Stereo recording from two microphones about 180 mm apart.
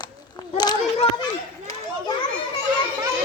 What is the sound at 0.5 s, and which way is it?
Speech, 25° left (ahead or behind).